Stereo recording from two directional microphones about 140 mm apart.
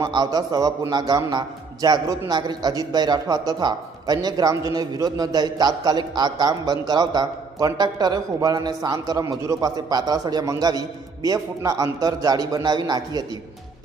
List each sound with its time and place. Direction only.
0.0 s a man's voice: 25° right (ahead or behind)